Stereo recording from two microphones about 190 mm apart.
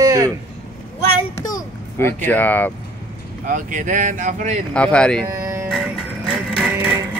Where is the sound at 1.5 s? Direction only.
10° left (ahead or behind).